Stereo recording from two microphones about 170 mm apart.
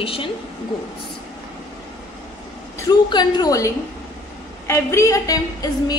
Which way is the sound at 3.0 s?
25° left (ahead or behind).